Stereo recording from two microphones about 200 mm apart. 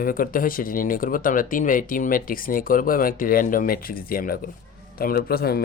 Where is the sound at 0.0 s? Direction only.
45° left (ahead or behind).